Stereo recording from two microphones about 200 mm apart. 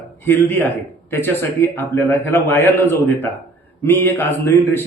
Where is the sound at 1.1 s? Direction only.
10° left (ahead or behind).